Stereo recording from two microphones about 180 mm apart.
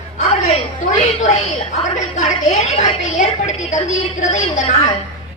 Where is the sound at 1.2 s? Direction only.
40° left (ahead or behind).